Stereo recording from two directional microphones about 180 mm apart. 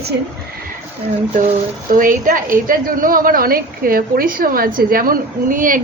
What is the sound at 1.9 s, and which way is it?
Speech, 50° right (ahead or behind).